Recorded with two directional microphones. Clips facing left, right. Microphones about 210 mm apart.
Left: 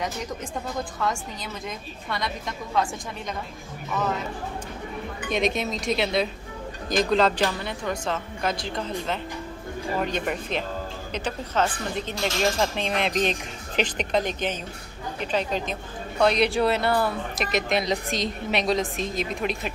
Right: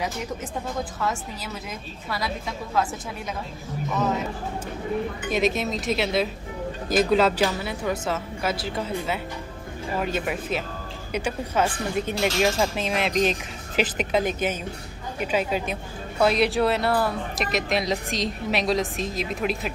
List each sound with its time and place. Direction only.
0.7 s a woman's voice: 5° right (ahead or behind)
3.9 s speech: 10° right (ahead or behind)
5.3 s a woman's voice: centre (ahead or behind)